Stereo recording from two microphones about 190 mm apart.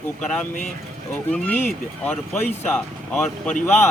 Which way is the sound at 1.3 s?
10° left (ahead or behind).